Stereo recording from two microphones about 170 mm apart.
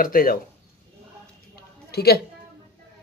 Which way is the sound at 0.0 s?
60° left (ahead or behind).